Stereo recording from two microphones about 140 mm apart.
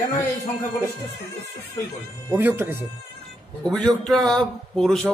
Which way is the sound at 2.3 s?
15° right (ahead or behind).